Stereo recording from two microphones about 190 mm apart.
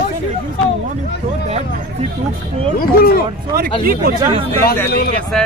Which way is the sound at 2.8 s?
50° left (ahead or behind).